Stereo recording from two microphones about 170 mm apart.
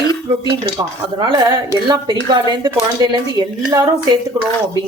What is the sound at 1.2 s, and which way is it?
Speech, 25° right (ahead or behind).